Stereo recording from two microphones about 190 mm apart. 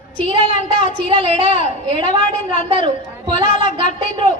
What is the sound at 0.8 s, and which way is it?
Speech, 25° right (ahead or behind).